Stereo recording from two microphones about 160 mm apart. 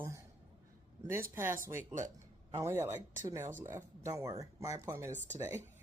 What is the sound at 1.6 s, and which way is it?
Speech, 10° right (ahead or behind).